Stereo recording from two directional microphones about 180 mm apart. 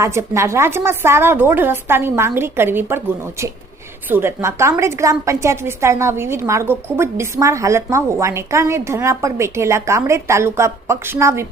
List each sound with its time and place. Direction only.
0.0 s a woman's voice: 15° right (ahead or behind)